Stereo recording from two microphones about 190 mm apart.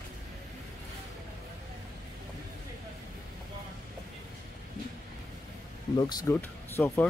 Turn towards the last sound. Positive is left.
turn(degrees=10)  # may be behind; listen again after turning